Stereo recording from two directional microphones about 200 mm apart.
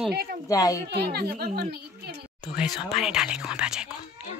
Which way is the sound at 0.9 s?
55° right (ahead or behind).